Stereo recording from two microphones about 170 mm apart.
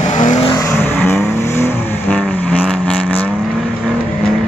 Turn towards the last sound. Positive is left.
turn(degrees=10)  # may be behind; listen again after turning